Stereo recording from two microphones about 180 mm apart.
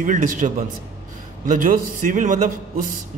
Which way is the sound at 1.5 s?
45° right (ahead or behind).